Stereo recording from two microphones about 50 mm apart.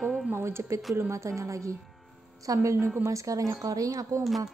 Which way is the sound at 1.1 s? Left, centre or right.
Right.